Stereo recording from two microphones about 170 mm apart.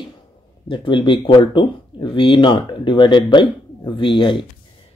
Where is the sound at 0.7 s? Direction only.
30° left (ahead or behind).